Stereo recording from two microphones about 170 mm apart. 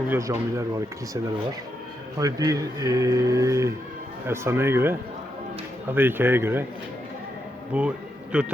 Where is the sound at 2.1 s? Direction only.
20° right (ahead or behind).